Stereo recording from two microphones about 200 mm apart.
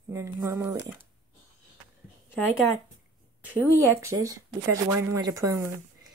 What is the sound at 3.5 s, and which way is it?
Speech, 10° right (ahead or behind).